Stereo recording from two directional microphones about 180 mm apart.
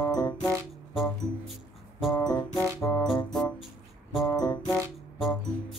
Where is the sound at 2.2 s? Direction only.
20° left (ahead or behind).